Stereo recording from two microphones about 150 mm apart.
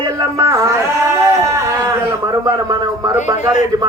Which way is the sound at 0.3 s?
20° right (ahead or behind).